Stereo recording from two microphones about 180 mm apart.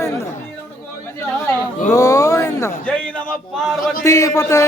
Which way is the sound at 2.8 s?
5° left (ahead or behind).